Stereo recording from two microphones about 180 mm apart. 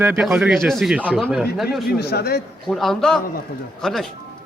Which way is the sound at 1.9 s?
65° left (ahead or behind).